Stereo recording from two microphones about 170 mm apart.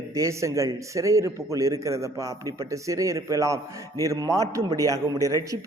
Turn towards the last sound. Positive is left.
turn(degrees=-20)  # may be behind; listen again after turning